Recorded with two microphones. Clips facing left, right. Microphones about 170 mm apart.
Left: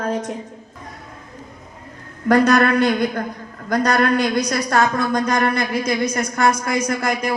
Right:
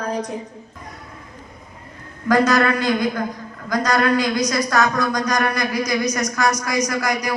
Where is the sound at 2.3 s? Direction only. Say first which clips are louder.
Left 2 dB; 60° left (ahead or behind).